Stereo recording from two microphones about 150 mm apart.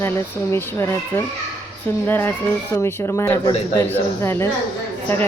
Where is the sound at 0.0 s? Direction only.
15° left (ahead or behind).